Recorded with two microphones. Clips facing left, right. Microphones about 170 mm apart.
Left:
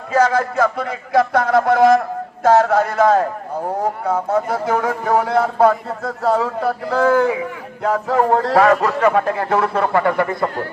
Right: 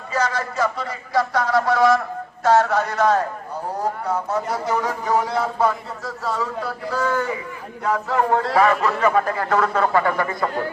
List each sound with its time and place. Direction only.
0.1 s a man's voice: 50° left (ahead or behind)
9.2 s speech: 25° left (ahead or behind)